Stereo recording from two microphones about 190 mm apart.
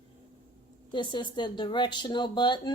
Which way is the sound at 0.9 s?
25° left (ahead or behind).